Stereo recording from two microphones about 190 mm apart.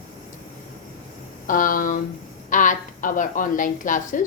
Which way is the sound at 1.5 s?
45° left (ahead or behind).